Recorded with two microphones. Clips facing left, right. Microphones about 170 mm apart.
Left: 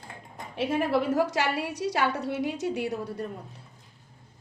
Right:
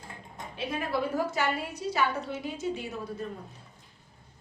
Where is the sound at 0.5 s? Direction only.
75° left (ahead or behind).